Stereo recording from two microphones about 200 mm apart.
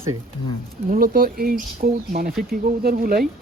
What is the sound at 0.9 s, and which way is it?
Speech, 45° right (ahead or behind).